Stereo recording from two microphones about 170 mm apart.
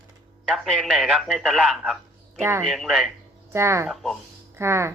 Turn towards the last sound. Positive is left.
turn(degrees=-15)  # may be behind; listen again after turning